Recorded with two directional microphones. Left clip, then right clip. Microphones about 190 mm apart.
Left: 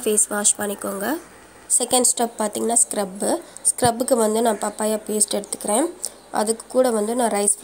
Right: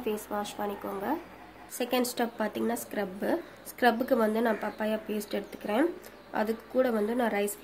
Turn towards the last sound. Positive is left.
turn(degrees=25)  # may be behind; listen again after turning